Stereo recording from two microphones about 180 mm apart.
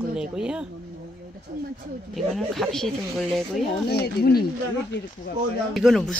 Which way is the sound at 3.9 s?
60° left (ahead or behind).